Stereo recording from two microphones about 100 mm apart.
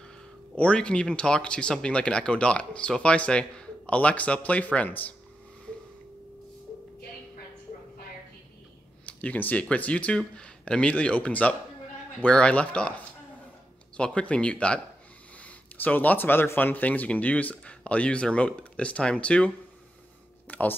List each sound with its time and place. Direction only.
0.6 s speech: 10° left (ahead or behind)
9.0 s speech: 15° left (ahead or behind)
20.4 s a sound: 15° left (ahead or behind)